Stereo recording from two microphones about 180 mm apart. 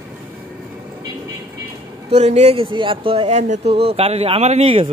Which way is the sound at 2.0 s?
35° right (ahead or behind).